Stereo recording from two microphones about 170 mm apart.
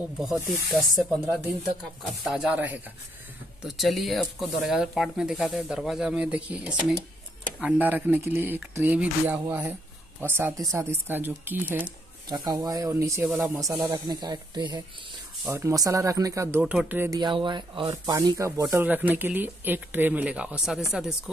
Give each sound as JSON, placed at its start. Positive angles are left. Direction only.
{"t": 0.2, "sound": "speech", "side_deg": 0}
{"t": 2.2, "sound": "speech", "side_deg": -5}
{"t": 15.4, "sound": "speech", "side_deg": -15}
{"t": 16.5, "sound": "speech", "side_deg": -10}
{"t": 17.2, "sound": "speech", "side_deg": -30}